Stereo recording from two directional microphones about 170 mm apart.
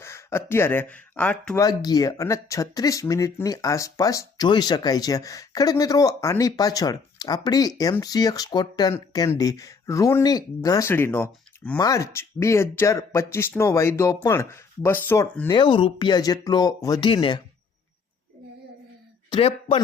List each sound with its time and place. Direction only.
0.0 s speech: 15° left (ahead or behind)
1.6 s speech: 20° left (ahead or behind)
15.4 s speech: 30° left (ahead or behind)
19.3 s speech: 35° left (ahead or behind)